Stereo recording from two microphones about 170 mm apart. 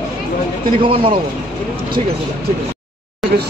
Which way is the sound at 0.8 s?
30° right (ahead or behind).